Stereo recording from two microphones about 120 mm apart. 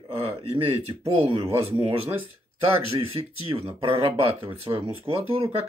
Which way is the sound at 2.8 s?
50° right (ahead or behind).